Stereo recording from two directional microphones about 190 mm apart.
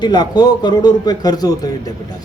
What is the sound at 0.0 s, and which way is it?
A man's voice, 20° left (ahead or behind).